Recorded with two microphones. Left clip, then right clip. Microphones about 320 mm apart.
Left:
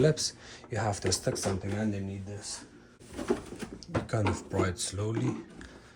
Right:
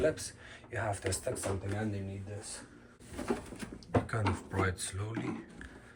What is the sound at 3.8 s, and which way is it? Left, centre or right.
Speech, centre.